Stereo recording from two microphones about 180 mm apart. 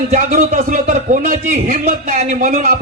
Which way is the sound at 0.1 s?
45° right (ahead or behind).